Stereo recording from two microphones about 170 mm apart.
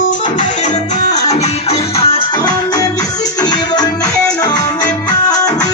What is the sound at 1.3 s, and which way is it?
Music, 40° left (ahead or behind).